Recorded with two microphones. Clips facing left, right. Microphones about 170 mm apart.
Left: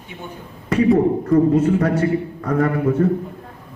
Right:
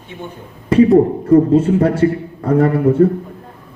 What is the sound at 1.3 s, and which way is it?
A man's voice, 30° right (ahead or behind).